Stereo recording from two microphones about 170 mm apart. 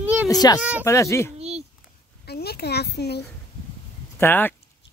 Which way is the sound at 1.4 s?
40° right (ahead or behind).